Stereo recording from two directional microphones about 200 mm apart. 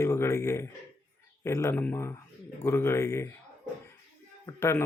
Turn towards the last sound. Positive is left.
turn(degrees=15)  # may be behind; listen again after turning